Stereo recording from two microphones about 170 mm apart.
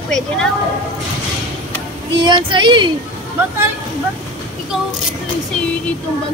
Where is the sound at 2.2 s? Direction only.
25° right (ahead or behind).